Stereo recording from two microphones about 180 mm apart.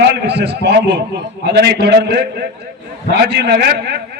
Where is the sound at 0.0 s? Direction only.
70° right (ahead or behind).